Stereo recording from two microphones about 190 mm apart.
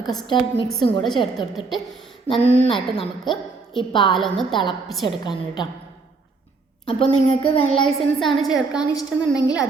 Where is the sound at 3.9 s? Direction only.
25° left (ahead or behind).